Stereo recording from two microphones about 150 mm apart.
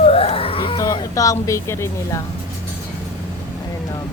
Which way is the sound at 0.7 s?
25° left (ahead or behind).